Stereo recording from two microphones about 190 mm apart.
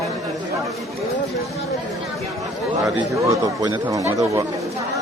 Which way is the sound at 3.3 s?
20° right (ahead or behind).